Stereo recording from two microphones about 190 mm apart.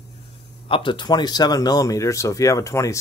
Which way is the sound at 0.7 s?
25° left (ahead or behind).